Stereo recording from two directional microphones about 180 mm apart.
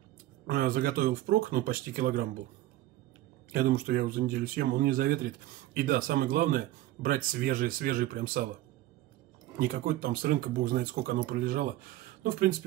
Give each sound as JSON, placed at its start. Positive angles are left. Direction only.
{"t": 0.5, "sound": "speech", "side_deg": -55}
{"t": 3.5, "sound": "speech", "side_deg": -55}
{"t": 9.6, "sound": "speech", "side_deg": -55}